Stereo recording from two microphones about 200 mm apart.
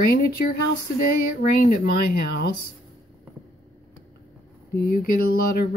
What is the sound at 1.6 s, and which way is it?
Speech, 45° left (ahead or behind).